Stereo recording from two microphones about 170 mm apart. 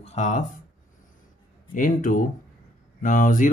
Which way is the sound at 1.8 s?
50° left (ahead or behind).